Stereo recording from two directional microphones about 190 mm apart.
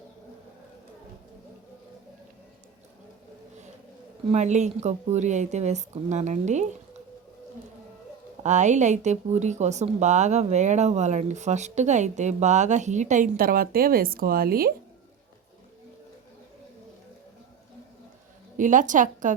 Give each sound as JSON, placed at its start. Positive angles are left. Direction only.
{"t": 4.3, "sound": "speech", "side_deg": -35}
{"t": 8.4, "sound": "speech", "side_deg": -40}
{"t": 18.5, "sound": "a woman's voice", "side_deg": -45}